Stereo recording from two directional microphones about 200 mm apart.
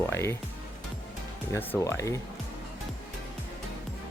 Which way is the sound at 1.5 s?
15° left (ahead or behind).